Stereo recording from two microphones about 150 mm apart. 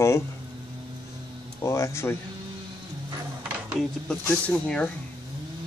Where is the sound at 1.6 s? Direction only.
20° left (ahead or behind).